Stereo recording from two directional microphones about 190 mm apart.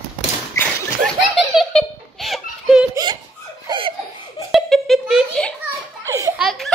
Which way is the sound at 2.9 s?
20° right (ahead or behind).